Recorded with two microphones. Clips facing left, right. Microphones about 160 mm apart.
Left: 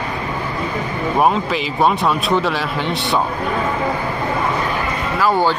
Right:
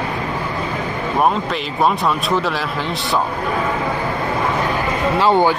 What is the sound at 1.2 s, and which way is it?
A man's voice, centre (ahead or behind).